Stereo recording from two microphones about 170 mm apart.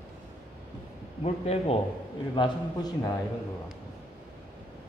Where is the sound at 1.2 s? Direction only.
40° left (ahead or behind).